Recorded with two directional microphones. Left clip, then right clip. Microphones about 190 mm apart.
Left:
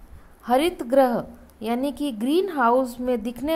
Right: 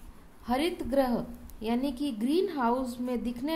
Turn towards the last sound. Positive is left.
turn(degrees=30)  # may be behind; listen again after turning